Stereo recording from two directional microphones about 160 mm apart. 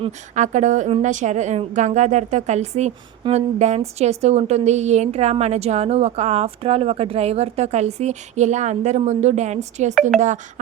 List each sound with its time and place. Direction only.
0.3 s a woman's voice: 50° right (ahead or behind)